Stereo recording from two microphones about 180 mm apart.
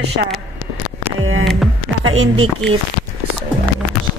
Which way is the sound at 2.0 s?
90° right.